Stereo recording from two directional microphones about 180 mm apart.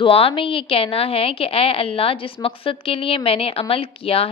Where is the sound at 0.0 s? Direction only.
30° left (ahead or behind).